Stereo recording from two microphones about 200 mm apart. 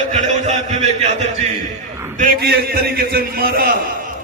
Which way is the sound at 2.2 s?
50° right (ahead or behind).